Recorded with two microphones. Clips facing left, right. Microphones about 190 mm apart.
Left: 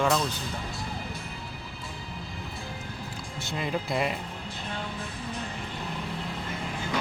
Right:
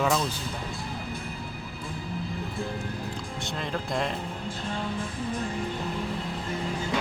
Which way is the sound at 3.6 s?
5° left (ahead or behind).